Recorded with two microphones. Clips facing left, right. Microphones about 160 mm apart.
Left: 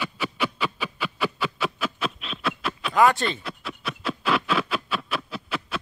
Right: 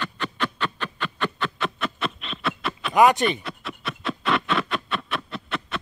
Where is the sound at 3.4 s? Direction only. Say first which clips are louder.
Even; centre (ahead or behind).